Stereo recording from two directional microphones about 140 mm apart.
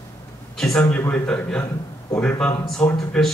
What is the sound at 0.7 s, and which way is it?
A man's voice, 10° left (ahead or behind).